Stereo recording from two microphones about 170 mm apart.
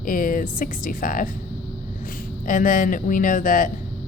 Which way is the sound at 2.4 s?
50° left (ahead or behind).